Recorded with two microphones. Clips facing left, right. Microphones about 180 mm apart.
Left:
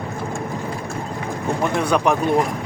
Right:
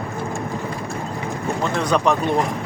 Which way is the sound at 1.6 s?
10° left (ahead or behind).